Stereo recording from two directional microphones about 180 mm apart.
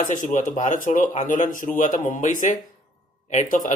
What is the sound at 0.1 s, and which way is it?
Speech, 45° left (ahead or behind).